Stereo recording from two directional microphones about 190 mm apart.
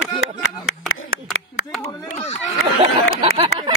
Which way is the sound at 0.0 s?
90° left.